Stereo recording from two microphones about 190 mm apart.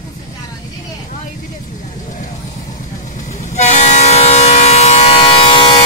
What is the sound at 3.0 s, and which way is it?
Train, 40° left (ahead or behind).